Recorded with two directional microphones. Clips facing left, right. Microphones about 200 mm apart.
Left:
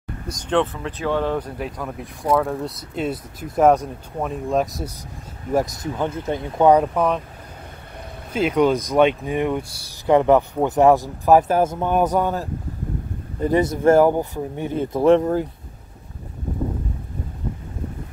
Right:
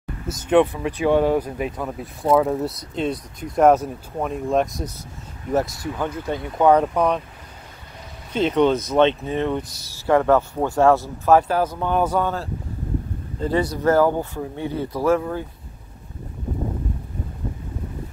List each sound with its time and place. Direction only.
0.3 s speech: 10° right (ahead or behind)
5.5 s speech: 15° left (ahead or behind)
6.8 s speech: centre (ahead or behind)
8.3 s speech: 10° left (ahead or behind); by 15.2 s 25° left (ahead or behind)